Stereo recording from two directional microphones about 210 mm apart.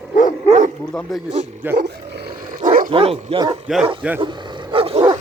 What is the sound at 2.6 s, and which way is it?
Dog, 40° right (ahead or behind).